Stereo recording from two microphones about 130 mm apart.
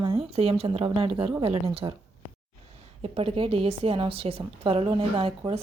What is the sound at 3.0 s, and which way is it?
A woman's voice, 45° right (ahead or behind).